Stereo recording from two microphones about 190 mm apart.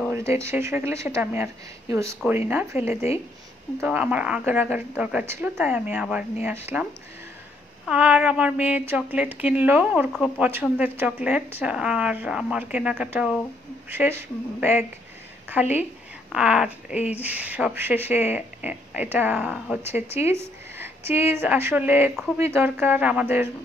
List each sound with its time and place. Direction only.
0.1 s speech: 15° right (ahead or behind)